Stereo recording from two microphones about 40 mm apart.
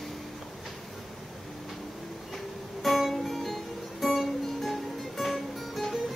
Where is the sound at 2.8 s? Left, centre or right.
Centre.